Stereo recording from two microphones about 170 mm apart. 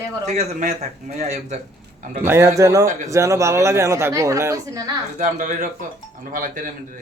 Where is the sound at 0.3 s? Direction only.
40° right (ahead or behind).